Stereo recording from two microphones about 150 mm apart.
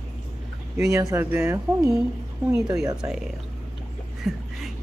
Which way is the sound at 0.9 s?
20° right (ahead or behind).